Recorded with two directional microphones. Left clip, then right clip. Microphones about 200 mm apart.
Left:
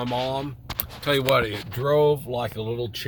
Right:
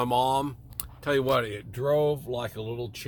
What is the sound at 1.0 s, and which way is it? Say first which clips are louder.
Speech: left 3 dB; 10° right (ahead or behind).